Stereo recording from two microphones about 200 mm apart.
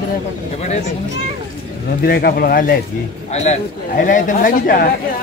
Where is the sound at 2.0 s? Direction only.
50° left (ahead or behind).